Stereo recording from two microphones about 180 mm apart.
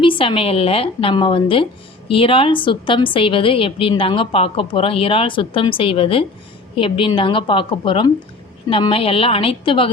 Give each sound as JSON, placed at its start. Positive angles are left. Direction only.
{"t": 0.0, "sound": "a woman's voice", "side_deg": 30}